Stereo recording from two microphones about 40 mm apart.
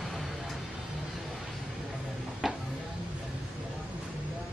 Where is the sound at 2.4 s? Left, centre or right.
Centre.